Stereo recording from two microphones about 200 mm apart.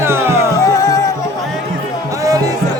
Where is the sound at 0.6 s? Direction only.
15° left (ahead or behind).